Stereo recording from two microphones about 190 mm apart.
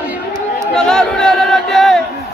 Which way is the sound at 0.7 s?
5° left (ahead or behind).